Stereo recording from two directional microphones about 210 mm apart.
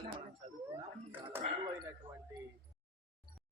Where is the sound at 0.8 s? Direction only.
10° right (ahead or behind).